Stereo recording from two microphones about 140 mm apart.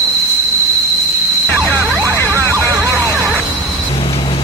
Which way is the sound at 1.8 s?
20° right (ahead or behind).